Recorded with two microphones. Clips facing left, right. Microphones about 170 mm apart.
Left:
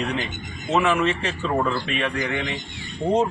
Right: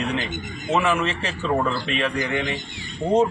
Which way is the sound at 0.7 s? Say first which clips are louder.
Left 1 dB; 5° right (ahead or behind).